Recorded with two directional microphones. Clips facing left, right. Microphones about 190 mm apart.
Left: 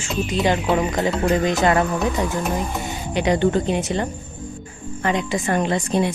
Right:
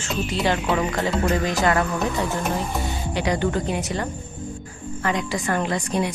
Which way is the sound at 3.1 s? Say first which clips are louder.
Left 5 dB; 20° left (ahead or behind).